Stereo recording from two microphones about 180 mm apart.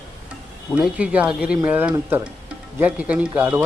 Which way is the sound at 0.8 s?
5° right (ahead or behind).